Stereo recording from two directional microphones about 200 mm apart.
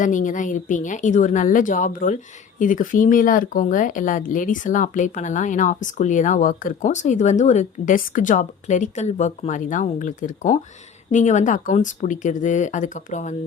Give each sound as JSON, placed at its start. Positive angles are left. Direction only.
{"t": 0.0, "sound": "speech", "side_deg": 40}